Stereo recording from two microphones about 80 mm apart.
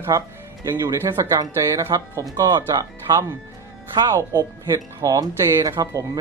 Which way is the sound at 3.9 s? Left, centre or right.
Right.